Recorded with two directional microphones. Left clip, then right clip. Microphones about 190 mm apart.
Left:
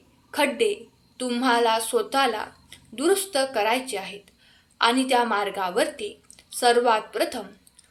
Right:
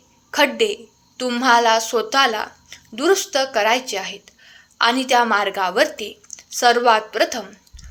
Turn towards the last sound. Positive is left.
turn(degrees=-25)  # may be behind; listen again after turning